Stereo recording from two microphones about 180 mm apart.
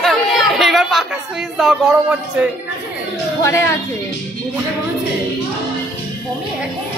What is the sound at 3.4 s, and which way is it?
Speech, 15° left (ahead or behind).